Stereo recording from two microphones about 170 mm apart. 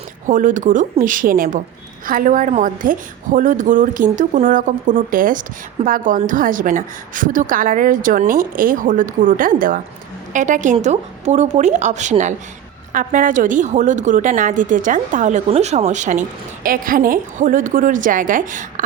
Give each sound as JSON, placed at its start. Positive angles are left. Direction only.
{"t": 0.3, "sound": "a woman's voice", "side_deg": -50}
{"t": 16.6, "sound": "a woman's voice", "side_deg": -55}